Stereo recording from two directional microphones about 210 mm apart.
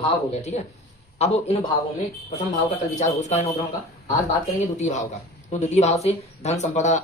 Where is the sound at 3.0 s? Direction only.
35° left (ahead or behind).